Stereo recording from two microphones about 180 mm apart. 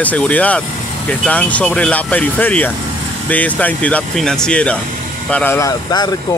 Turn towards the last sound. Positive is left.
turn(degrees=20)  # may be behind; listen again after turning